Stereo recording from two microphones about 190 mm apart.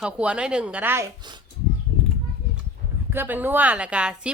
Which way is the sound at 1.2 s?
20° right (ahead or behind).